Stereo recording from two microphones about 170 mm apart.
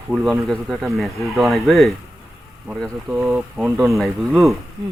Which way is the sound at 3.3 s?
5° right (ahead or behind).